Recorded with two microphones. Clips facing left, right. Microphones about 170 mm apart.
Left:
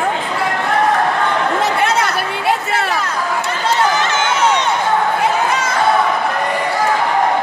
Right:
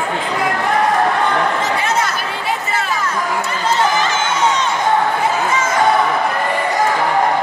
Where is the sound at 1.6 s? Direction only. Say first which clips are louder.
Left 2 dB; 65° left (ahead or behind).